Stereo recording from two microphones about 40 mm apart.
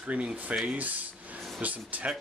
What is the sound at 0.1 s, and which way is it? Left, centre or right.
Speech, right.